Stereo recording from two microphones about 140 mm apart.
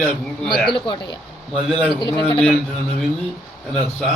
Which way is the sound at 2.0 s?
25° left (ahead or behind).